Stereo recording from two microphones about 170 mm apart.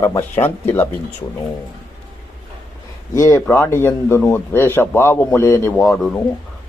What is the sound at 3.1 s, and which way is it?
A man's voice, 20° left (ahead or behind).